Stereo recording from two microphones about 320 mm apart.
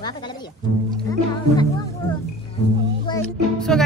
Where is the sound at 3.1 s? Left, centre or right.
Centre.